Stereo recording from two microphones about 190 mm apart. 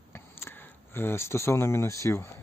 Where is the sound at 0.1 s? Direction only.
10° left (ahead or behind).